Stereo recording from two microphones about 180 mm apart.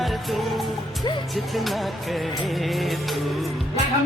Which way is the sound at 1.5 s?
Centre (ahead or behind).